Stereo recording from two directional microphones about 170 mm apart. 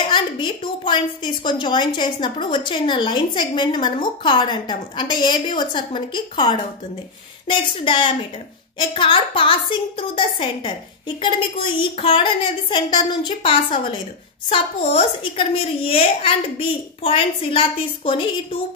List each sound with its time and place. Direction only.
0.0 s a woman's voice: 30° left (ahead or behind)